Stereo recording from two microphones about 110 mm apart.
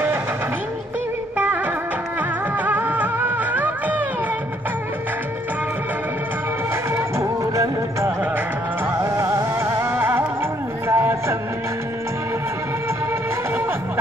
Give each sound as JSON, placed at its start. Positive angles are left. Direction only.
{"t": 2.6, "sound": "music", "side_deg": -15}
{"t": 7.2, "sound": "music", "side_deg": -30}
{"t": 10.9, "sound": "a sound", "side_deg": -25}